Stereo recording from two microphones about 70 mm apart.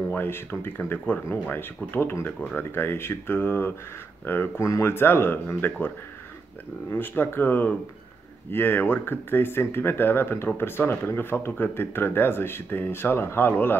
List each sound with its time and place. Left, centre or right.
0.1 s speech: left
4.6 s speech: left
4.9 s speech: left
6.9 s speech: left